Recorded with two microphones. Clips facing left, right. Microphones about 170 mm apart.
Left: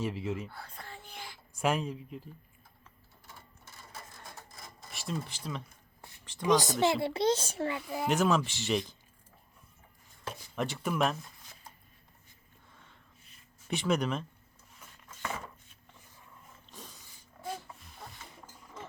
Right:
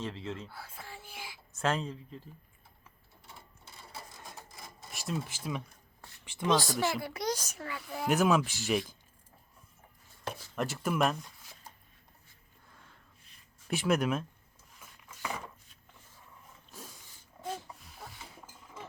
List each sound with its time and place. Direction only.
0.0 s speech: 15° left (ahead or behind)
0.5 s whispering: 5° right (ahead or behind)
1.6 s speech: 10° left (ahead or behind)
4.1 s printer: 15° right (ahead or behind)
4.9 s speech: centre (ahead or behind)
6.4 s a child's voice: 15° left (ahead or behind)
7.9 s speech: centre (ahead or behind)
10.5 s speech: centre (ahead or behind)
12.7 s a sound: centre (ahead or behind)
17.4 s a sound: 5° left (ahead or behind)